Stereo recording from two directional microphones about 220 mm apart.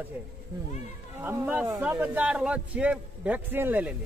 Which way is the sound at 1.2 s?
10° right (ahead or behind).